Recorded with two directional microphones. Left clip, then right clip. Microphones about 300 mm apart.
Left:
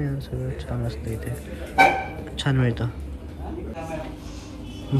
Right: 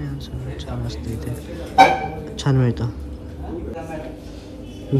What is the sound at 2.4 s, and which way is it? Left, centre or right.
Speech, centre.